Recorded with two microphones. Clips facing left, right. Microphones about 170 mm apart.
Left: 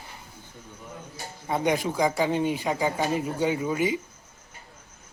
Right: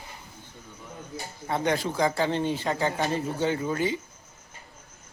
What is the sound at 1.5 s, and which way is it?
A man's voice, 15° left (ahead or behind).